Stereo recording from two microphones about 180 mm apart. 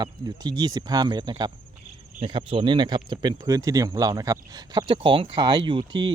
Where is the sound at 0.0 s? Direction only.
20° right (ahead or behind).